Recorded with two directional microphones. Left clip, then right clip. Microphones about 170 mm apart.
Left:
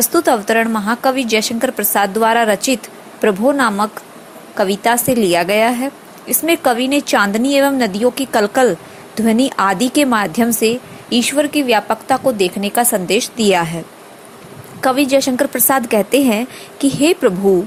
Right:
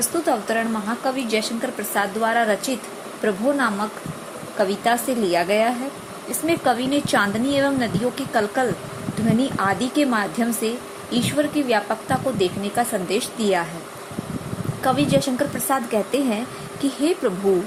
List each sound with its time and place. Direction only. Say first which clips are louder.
0.0 s a woman's voice: left 8 dB; 45° left (ahead or behind)
14.8 s speech: left 6 dB; 35° left (ahead or behind)